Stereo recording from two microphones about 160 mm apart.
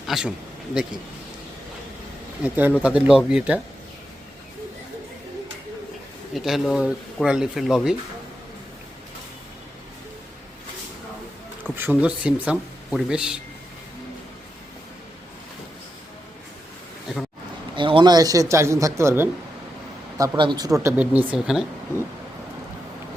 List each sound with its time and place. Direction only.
0.0 s speech: 5° right (ahead or behind)
2.4 s speech: 10° right (ahead or behind)
6.3 s speech: centre (ahead or behind)
11.8 s speech: 10° right (ahead or behind)
17.7 s speech: 30° right (ahead or behind); by 19.3 s 15° right (ahead or behind)
20.1 s speech: 25° right (ahead or behind)
21.0 s speech: 10° right (ahead or behind)